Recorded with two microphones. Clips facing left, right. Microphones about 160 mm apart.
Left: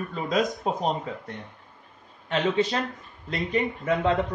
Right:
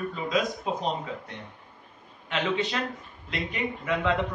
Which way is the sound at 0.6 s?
45° left (ahead or behind).